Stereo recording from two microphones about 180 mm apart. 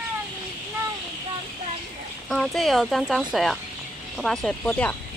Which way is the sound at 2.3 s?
Centre (ahead or behind).